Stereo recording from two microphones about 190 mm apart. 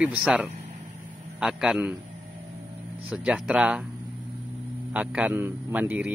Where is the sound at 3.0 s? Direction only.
5° right (ahead or behind).